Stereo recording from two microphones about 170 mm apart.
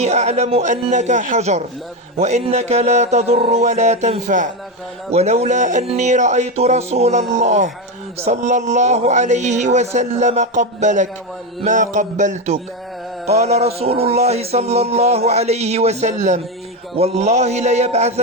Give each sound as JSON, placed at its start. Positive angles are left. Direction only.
{"t": 0.0, "sound": "speech", "side_deg": -40}
{"t": 2.1, "sound": "music", "side_deg": -40}
{"t": 8.2, "sound": "speech", "side_deg": -45}
{"t": 13.2, "sound": "music", "side_deg": -40}